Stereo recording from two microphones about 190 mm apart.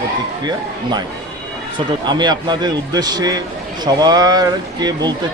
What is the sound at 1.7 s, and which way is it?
Speech, 25° right (ahead or behind).